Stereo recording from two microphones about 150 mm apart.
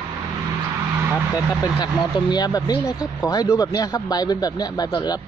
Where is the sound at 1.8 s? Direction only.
30° left (ahead or behind).